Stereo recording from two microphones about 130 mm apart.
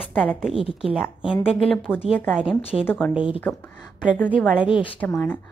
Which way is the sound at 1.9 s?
5° right (ahead or behind).